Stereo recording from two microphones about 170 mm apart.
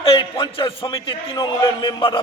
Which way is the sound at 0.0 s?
30° left (ahead or behind).